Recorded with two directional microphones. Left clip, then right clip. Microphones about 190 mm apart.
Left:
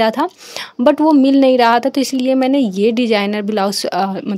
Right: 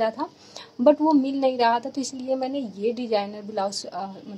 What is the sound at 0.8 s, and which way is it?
Speech, 30° left (ahead or behind).